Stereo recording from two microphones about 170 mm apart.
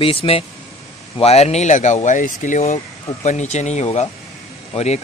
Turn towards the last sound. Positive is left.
turn(degrees=40)  # may be behind; listen again after turning